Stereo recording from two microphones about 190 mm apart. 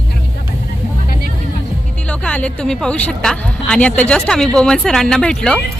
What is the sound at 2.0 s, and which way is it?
Speech, 5° left (ahead or behind).